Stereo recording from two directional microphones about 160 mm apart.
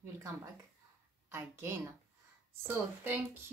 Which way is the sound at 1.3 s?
15° right (ahead or behind).